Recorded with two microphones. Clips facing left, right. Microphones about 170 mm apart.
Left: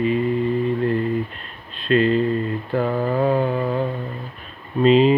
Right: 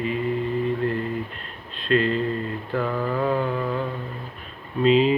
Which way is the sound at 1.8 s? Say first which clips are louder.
Left 4 dB; 20° left (ahead or behind).